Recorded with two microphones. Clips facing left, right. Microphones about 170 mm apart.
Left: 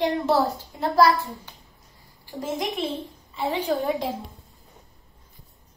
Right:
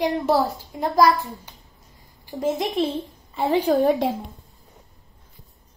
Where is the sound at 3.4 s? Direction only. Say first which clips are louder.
Right 5 dB; 45° right (ahead or behind).